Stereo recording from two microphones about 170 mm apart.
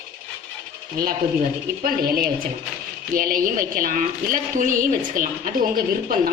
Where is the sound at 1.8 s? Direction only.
60° right (ahead or behind).